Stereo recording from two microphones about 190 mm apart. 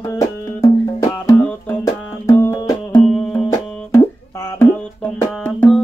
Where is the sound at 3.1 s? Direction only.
5° left (ahead or behind).